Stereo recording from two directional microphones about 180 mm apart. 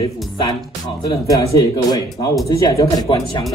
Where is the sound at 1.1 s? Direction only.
20° left (ahead or behind).